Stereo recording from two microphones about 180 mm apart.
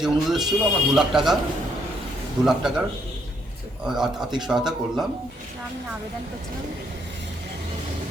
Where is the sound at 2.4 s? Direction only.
25° right (ahead or behind).